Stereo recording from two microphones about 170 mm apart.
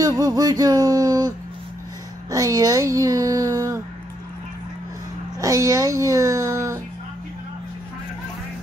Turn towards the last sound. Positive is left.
turn(degrees=-15)  # may be behind; listen again after turning